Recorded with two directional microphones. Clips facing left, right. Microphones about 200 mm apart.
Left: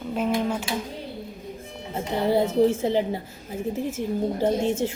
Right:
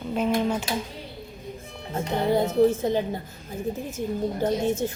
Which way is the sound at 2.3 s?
30° left (ahead or behind).